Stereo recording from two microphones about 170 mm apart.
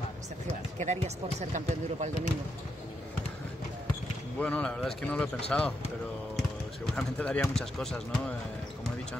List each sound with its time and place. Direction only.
0.7 s speech: 45° right (ahead or behind)
4.4 s speech: 5° left (ahead or behind)
7.0 s speech: 5° left (ahead or behind)